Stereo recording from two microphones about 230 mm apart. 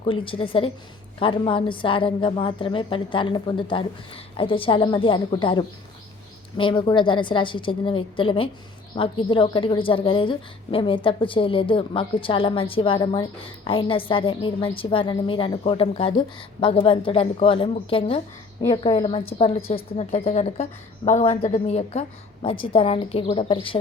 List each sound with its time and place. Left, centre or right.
0.0 s a woman's voice: left